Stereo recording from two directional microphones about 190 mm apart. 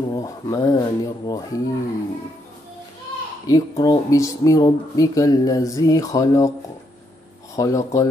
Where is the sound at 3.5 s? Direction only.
20° left (ahead or behind).